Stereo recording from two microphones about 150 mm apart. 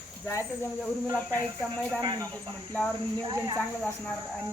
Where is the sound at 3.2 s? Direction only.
25° right (ahead or behind).